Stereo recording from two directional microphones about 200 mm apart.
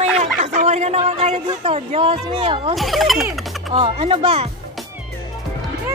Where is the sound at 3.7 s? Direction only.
25° right (ahead or behind).